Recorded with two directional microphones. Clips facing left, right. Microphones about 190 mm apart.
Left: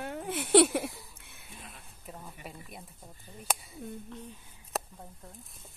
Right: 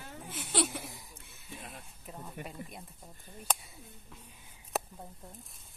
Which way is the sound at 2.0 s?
5° left (ahead or behind).